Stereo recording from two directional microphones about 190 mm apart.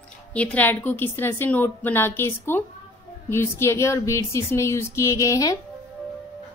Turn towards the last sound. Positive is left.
turn(degrees=15)  # may be behind; listen again after turning